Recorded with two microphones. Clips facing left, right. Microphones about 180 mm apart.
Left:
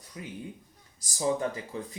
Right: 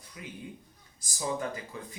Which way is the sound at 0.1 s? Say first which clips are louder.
Left 3 dB; 35° left (ahead or behind).